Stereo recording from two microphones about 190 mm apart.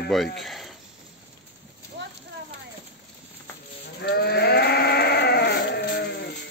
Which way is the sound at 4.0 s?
55° left (ahead or behind).